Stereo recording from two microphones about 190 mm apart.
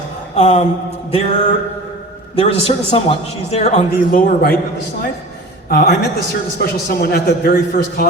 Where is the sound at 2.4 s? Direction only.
30° left (ahead or behind); by 4.6 s 50° left (ahead or behind).